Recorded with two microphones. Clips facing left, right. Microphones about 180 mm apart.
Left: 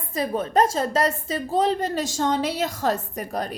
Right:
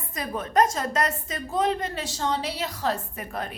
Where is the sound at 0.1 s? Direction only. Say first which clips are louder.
Left 5 dB; 30° left (ahead or behind).